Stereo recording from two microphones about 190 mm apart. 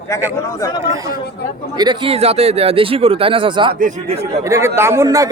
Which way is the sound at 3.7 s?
45° right (ahead or behind).